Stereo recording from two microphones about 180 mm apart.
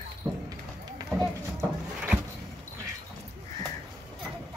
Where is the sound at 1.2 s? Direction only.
Centre (ahead or behind).